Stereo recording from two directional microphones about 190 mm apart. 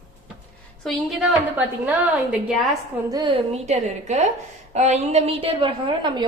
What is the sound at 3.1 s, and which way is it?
A woman's voice, 25° right (ahead or behind).